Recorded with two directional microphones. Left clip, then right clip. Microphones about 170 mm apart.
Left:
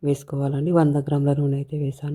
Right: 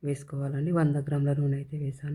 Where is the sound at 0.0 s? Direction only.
30° left (ahead or behind).